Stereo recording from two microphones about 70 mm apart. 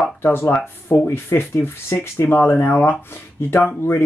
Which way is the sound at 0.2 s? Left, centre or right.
Left.